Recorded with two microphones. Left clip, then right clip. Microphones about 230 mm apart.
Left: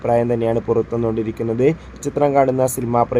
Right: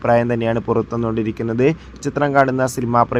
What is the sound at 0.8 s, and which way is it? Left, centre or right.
Speech, right.